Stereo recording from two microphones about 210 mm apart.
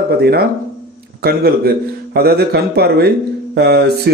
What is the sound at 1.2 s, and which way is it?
A man's voice, 50° right (ahead or behind).